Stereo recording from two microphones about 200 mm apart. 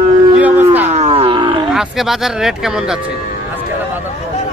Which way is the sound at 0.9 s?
30° right (ahead or behind).